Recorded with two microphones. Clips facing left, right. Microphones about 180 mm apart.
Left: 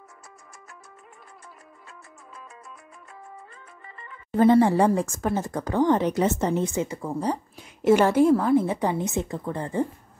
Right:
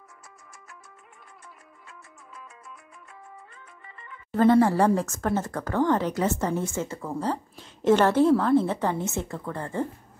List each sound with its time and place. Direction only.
3.8 s music: 35° left (ahead or behind)
4.3 s speech: 15° left (ahead or behind)